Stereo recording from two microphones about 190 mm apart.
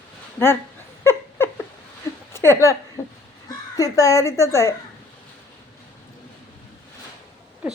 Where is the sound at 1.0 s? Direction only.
10° left (ahead or behind).